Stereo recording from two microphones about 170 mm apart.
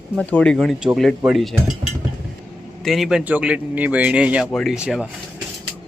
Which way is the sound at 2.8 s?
Centre (ahead or behind).